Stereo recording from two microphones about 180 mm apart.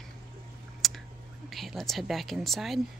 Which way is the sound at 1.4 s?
Centre (ahead or behind).